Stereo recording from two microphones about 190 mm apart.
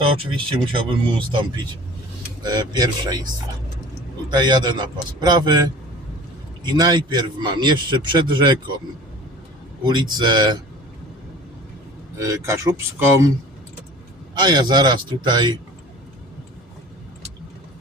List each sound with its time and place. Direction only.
0.5 s a man's voice: 25° right (ahead or behind)
4.3 s a man's voice: 20° right (ahead or behind)
9.8 s a man's voice: 25° right (ahead or behind)
12.1 s speech: 15° right (ahead or behind)
14.3 s a man's voice: 25° right (ahead or behind)